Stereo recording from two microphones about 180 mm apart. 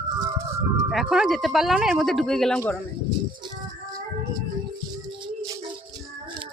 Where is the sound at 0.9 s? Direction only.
Centre (ahead or behind).